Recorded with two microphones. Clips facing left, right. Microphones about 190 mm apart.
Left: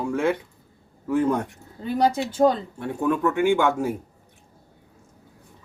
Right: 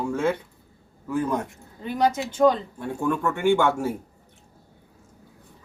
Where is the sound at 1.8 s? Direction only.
35° left (ahead or behind).